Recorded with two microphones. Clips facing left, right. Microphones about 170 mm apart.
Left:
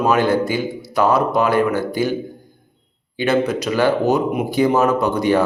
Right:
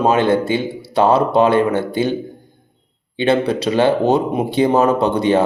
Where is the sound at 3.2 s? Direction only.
30° right (ahead or behind).